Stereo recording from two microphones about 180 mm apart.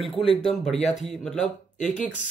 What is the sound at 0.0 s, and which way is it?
Speech, centre (ahead or behind).